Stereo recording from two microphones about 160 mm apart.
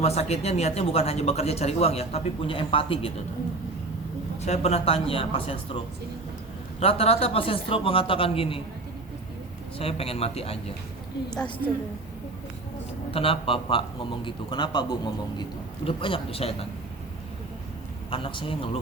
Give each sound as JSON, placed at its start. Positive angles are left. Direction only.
{"t": 0.0, "sound": "speech", "side_deg": 40}
{"t": 4.4, "sound": "speech", "side_deg": 40}
{"t": 9.7, "sound": "speech", "side_deg": 35}
{"t": 13.1, "sound": "speech", "side_deg": 35}
{"t": 18.1, "sound": "speech", "side_deg": 30}